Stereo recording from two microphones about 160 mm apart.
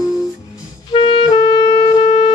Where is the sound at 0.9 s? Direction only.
30° left (ahead or behind).